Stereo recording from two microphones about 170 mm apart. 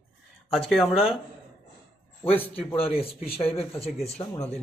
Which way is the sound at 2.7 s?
35° left (ahead or behind).